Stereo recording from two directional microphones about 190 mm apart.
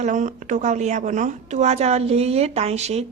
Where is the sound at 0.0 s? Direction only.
40° right (ahead or behind).